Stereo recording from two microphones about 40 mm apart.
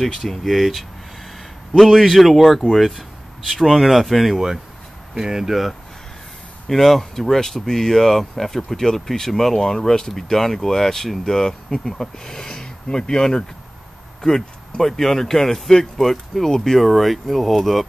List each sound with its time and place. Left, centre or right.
0.4 s speech: centre
5.1 s speech: centre
6.7 s speech: centre
16.8 s speech: centre